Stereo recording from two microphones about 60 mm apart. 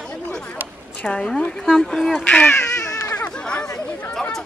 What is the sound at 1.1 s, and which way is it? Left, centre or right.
Speech, centre.